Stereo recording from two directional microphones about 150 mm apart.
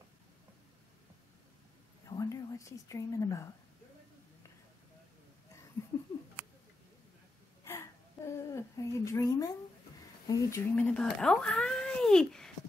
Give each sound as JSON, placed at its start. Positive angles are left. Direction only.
{"t": 2.0, "sound": "a woman's voice", "side_deg": 20}
{"t": 5.8, "sound": "laughter", "side_deg": 15}
{"t": 7.6, "sound": "a sound", "side_deg": 20}
{"t": 10.2, "sound": "speech", "side_deg": 20}